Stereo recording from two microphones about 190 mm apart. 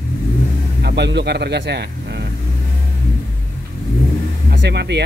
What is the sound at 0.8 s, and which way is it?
Speech, 65° right (ahead or behind).